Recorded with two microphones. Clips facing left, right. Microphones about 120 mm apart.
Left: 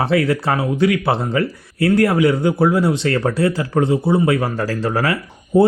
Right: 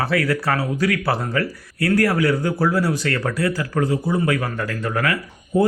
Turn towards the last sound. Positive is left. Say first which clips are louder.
# left 5 dB
turn(degrees=30)  # may be behind; listen again after turning